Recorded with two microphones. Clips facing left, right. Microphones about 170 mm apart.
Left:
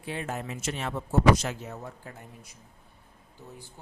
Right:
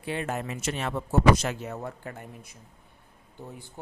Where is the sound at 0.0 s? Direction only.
65° right (ahead or behind).